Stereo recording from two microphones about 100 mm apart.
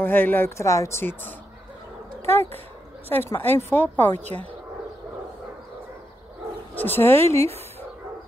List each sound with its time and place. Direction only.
0.0 s speech: 20° left (ahead or behind)
6.7 s speech: 20° left (ahead or behind)